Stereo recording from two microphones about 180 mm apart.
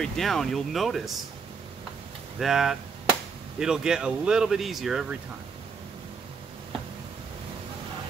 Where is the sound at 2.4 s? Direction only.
Centre (ahead or behind).